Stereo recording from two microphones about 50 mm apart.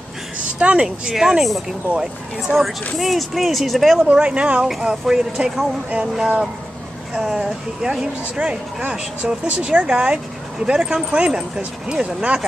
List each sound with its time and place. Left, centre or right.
0.6 s speech: right
0.8 s speech: centre
4.0 s speech: centre